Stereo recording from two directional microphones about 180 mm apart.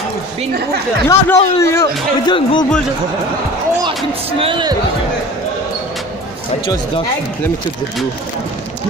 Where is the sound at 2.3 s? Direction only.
25° left (ahead or behind).